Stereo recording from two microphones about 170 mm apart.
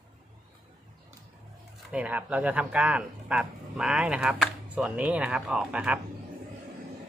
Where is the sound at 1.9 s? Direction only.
10° right (ahead or behind).